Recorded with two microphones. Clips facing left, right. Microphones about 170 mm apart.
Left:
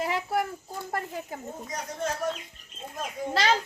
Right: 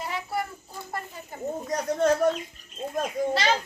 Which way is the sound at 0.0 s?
90° left.